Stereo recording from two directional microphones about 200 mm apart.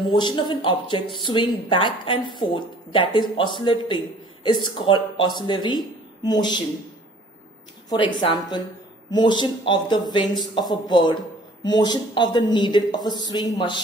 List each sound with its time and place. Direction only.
0.0 s speech: 20° left (ahead or behind)
7.9 s speech: 20° left (ahead or behind)